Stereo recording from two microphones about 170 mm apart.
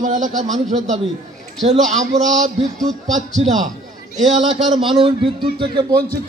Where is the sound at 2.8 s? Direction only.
Centre (ahead or behind).